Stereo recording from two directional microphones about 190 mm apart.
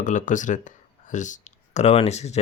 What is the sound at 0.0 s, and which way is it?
Speech, 40° left (ahead or behind).